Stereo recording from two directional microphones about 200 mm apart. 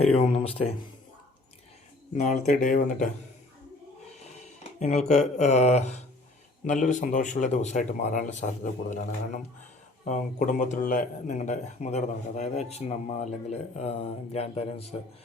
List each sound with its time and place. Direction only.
0.0 s speech: 30° left (ahead or behind)
2.1 s speech: 35° left (ahead or behind)
4.8 s speech: 35° left (ahead or behind)